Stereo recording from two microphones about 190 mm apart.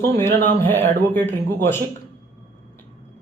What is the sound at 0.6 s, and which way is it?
Speech, 10° left (ahead or behind).